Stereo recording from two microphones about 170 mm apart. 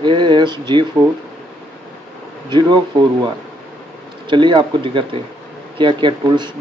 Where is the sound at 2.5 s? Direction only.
25° right (ahead or behind).